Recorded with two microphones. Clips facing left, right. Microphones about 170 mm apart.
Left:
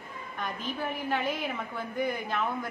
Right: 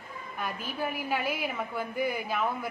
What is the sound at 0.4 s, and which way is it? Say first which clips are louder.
A woman's voice: right 1 dB; 10° right (ahead or behind).